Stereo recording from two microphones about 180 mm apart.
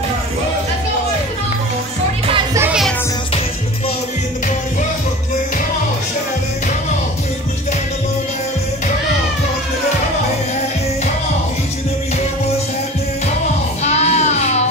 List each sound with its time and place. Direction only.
13.8 s music: 40° left (ahead or behind)